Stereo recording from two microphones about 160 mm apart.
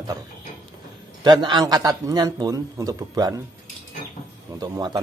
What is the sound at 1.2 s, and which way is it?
A man's voice, 30° right (ahead or behind).